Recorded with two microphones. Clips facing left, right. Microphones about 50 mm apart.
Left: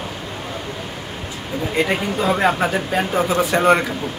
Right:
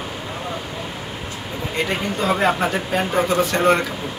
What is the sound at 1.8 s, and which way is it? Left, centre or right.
Speech, centre.